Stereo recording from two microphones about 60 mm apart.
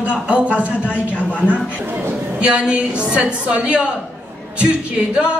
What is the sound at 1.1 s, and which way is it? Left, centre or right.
Speech, left.